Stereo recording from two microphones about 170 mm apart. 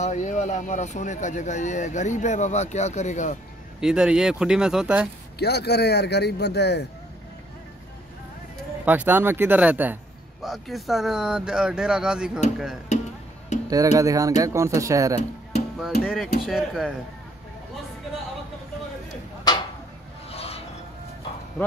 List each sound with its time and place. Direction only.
0.0 s speech: 45° left (ahead or behind)
3.8 s speech: 5° right (ahead or behind)
5.4 s a man's voice: 75° left (ahead or behind)
8.8 s speech: 10° right (ahead or behind)
13.5 s music: 45° left (ahead or behind)
13.9 s speech: 20° right (ahead or behind)
16.0 s speech: 5° right (ahead or behind)
19.5 s a sound: 25° left (ahead or behind)
20.2 s mechanisms: 35° left (ahead or behind)